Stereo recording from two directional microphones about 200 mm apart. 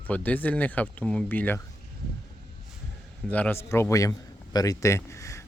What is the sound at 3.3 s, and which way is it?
A man's voice, 10° left (ahead or behind).